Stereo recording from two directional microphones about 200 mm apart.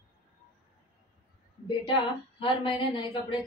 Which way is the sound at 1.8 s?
25° left (ahead or behind).